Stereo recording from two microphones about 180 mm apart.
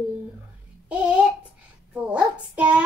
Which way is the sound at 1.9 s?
5° right (ahead or behind).